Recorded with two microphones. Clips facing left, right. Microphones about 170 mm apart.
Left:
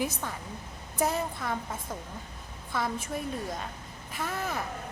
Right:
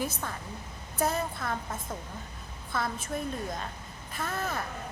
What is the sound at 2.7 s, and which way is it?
Speech, 10° left (ahead or behind).